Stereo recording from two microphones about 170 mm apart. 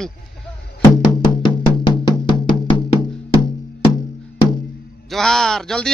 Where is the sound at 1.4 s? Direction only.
25° left (ahead or behind).